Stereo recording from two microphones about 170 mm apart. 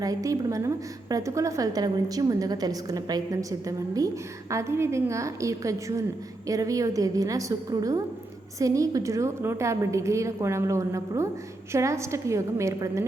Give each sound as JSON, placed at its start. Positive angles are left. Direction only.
{"t": 0.0, "sound": "a woman's voice", "side_deg": -20}